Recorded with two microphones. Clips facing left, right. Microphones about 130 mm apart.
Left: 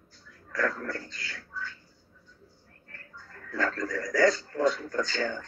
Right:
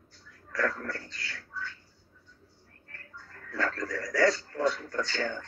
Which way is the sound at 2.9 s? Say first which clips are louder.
Left 1 dB; 25° left (ahead or behind).